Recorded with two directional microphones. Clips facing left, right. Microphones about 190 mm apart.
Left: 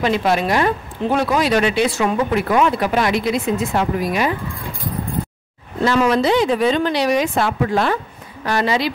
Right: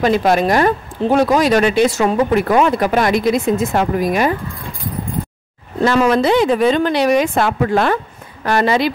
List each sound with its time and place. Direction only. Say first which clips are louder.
0.0 s speech: right 4 dB; 45° right (ahead or behind)
5.9 s speech: right 2 dB; 50° right (ahead or behind)